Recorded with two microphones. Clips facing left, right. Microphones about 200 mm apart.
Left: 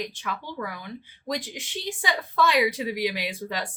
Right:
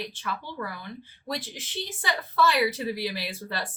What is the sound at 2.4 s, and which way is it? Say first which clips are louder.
A woman's voice: left 1 dB; 15° left (ahead or behind).